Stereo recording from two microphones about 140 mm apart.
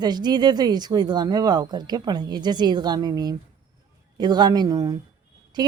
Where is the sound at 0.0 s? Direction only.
30° right (ahead or behind).